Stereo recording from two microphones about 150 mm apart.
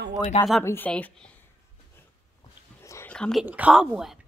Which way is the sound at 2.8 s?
20° left (ahead or behind).